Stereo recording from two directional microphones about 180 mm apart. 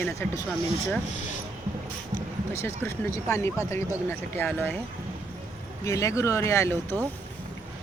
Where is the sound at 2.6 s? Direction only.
15° left (ahead or behind).